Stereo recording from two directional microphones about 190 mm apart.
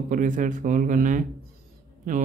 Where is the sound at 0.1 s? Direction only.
45° right (ahead or behind).